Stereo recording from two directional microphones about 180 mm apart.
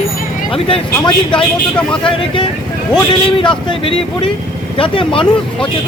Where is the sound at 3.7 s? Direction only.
30° left (ahead or behind).